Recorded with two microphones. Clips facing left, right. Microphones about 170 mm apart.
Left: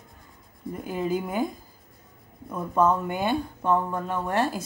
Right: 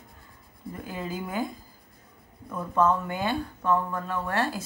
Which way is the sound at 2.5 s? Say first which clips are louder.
Left 1 dB; 15° left (ahead or behind).